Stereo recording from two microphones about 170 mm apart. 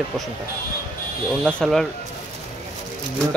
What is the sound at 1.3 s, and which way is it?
Speech, 5° left (ahead or behind).